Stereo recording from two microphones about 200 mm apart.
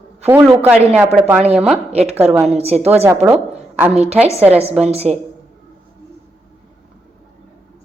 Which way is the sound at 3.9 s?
30° right (ahead or behind).